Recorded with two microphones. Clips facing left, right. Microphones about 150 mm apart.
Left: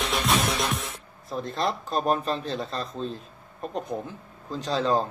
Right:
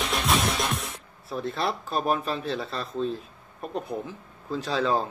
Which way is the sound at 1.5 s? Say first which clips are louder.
Left 2 dB; 5° right (ahead or behind).